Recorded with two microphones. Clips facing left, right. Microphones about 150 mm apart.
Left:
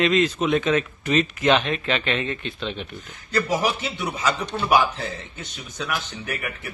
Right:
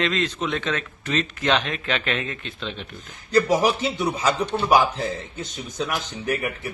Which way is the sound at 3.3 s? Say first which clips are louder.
Right 4 dB; 40° right (ahead or behind).